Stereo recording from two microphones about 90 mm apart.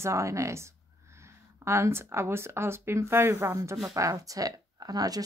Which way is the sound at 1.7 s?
30° right (ahead or behind).